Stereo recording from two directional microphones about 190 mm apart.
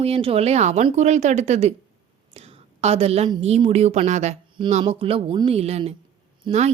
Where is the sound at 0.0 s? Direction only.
30° right (ahead or behind).